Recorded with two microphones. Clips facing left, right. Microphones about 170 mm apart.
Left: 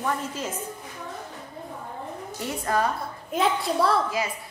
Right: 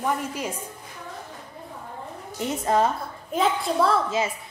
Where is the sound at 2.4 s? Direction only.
25° right (ahead or behind).